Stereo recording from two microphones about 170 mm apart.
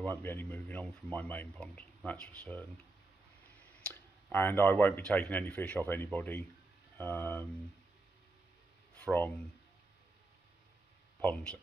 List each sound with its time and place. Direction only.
0.0 s speech: 10° left (ahead or behind)
3.8 s speech: 10° left (ahead or behind)
8.9 s speech: 10° left (ahead or behind)
11.1 s speech: 10° left (ahead or behind)